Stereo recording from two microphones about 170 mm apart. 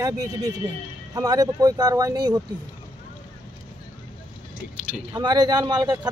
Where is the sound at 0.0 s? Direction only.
20° right (ahead or behind).